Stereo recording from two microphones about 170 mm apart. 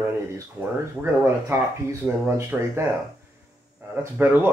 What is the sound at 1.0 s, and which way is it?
Speech, 15° right (ahead or behind).